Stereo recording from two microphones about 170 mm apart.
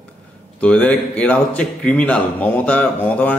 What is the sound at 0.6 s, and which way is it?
Speech, 10° left (ahead or behind).